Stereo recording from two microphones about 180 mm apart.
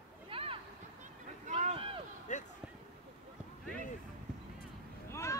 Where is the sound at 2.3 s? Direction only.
40° left (ahead or behind).